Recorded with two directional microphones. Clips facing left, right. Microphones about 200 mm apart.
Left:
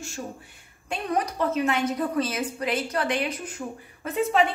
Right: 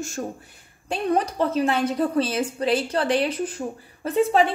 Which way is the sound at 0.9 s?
30° right (ahead or behind).